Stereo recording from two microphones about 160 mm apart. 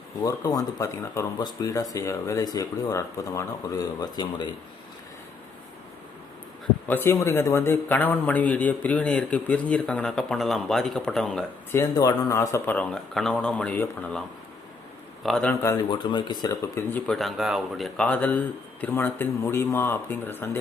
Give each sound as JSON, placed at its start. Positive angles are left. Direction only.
{"t": 0.2, "sound": "speech", "side_deg": 20}
{"t": 6.8, "sound": "a man's voice", "side_deg": 10}
{"t": 11.7, "sound": "a man's voice", "side_deg": 20}
{"t": 15.6, "sound": "speech", "side_deg": 25}
{"t": 17.1, "sound": "a man's voice", "side_deg": 0}